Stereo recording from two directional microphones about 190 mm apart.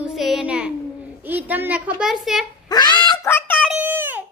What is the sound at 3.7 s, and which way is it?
Baby cry, 10° right (ahead or behind).